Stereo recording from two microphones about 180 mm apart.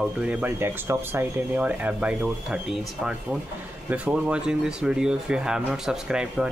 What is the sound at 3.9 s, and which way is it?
Speech, 5° right (ahead or behind).